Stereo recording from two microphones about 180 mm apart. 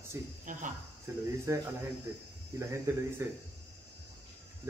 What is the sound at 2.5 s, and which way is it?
Speech, 15° right (ahead or behind).